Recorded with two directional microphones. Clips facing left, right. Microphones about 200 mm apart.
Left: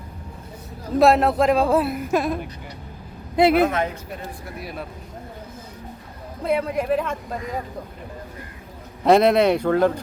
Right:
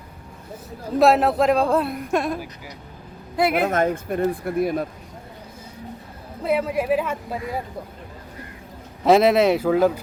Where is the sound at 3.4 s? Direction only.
20° left (ahead or behind).